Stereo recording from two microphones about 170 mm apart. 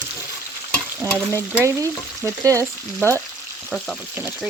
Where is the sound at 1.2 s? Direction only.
15° right (ahead or behind).